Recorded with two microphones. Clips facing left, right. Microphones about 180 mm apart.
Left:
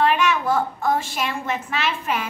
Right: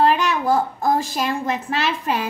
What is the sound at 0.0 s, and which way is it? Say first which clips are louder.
A woman's voice: right 2 dB; 35° right (ahead or behind).